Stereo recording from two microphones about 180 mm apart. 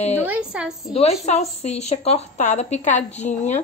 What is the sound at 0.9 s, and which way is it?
A woman's voice, 35° left (ahead or behind).